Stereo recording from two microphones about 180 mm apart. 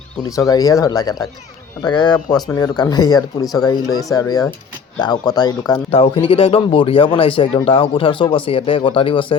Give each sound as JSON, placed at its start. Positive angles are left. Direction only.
{"t": 0.2, "sound": "speech", "side_deg": 20}